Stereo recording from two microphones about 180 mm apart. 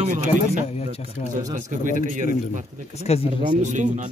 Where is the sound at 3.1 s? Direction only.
35° left (ahead or behind).